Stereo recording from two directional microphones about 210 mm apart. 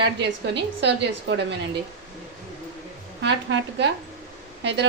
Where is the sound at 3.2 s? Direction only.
55° right (ahead or behind).